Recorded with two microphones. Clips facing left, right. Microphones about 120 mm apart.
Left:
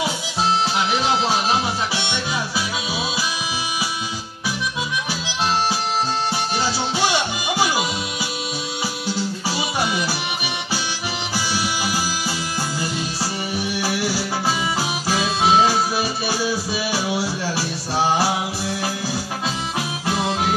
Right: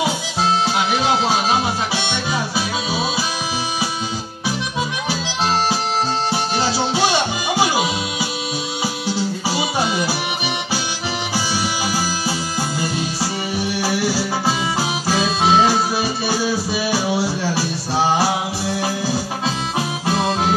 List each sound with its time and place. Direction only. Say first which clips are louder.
0.0 s music: right 3 dB; 25° right (ahead or behind)
6.3 s music: right 3 dB; 25° right (ahead or behind)
9.6 s music: right 2 dB; 25° right (ahead or behind)
13.7 s music: right 4 dB; 35° right (ahead or behind)